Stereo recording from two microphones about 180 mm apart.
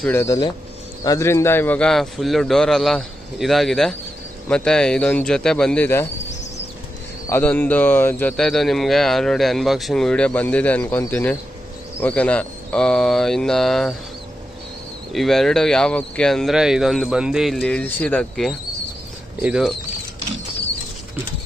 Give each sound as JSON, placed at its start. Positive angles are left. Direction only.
{"t": 0.0, "sound": "speech", "side_deg": 15}
{"t": 7.2, "sound": "speech", "side_deg": 10}
{"t": 15.1, "sound": "speech", "side_deg": 0}